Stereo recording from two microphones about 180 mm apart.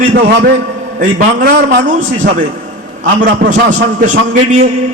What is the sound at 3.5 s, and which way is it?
Speech, 45° right (ahead or behind).